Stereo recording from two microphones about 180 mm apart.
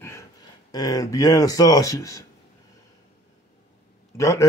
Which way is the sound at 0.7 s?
20° left (ahead or behind).